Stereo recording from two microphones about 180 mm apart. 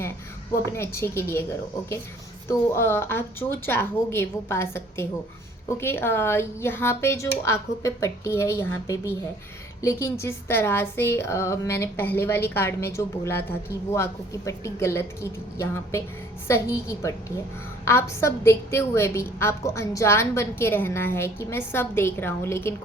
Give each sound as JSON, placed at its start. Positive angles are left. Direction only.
{"t": 0.6, "sound": "a woman's voice", "side_deg": 15}
{"t": 2.5, "sound": "a woman's voice", "side_deg": 15}